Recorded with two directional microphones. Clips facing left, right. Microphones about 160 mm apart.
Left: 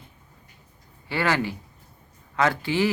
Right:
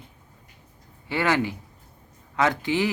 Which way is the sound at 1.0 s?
20° right (ahead or behind).